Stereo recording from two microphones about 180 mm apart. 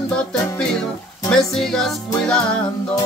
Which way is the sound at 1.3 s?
Centre (ahead or behind).